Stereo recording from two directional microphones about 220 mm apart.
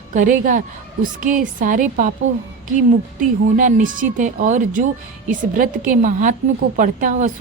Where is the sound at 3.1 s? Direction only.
35° right (ahead or behind).